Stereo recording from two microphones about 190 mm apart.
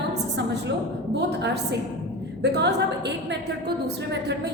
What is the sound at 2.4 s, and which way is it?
Speech, 60° right (ahead or behind).